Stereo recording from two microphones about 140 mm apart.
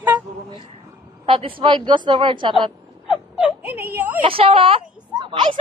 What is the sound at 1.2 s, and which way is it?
Speech, 40° right (ahead or behind).